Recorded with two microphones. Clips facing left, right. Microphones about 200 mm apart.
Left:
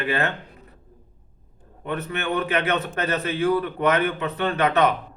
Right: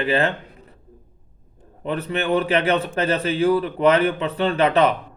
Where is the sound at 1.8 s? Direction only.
30° right (ahead or behind).